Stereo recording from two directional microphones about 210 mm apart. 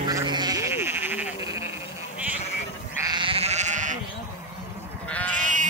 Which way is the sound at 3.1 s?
25° right (ahead or behind).